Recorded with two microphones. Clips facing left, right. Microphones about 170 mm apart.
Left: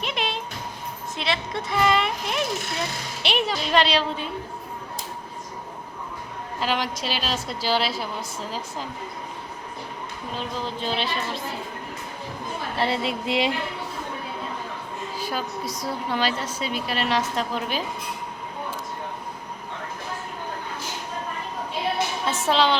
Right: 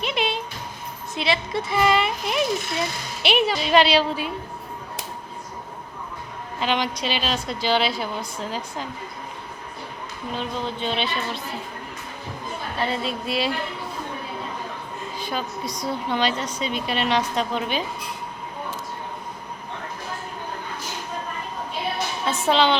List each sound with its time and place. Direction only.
0.0 s music: centre (ahead or behind)
1.1 s a woman's voice: 5° right (ahead or behind)
6.6 s a woman's voice: centre (ahead or behind)
10.3 s a woman's voice: centre (ahead or behind)
12.8 s a woman's voice: 25° left (ahead or behind)
15.2 s a woman's voice: 5° left (ahead or behind)
22.3 s music: centre (ahead or behind)